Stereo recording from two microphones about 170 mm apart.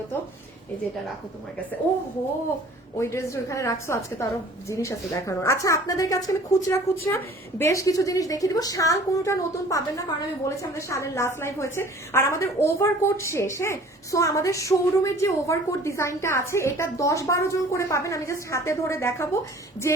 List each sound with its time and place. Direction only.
1.9 s a woman's voice: 10° left (ahead or behind)